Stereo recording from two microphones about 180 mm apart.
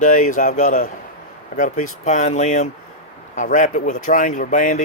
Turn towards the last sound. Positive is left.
turn(degrees=45)  # may be behind; listen again after turning